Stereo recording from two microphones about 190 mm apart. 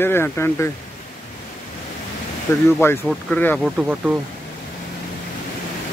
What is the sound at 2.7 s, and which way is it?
Speech, 10° left (ahead or behind).